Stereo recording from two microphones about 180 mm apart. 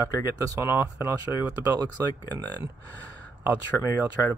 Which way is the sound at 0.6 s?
15° right (ahead or behind).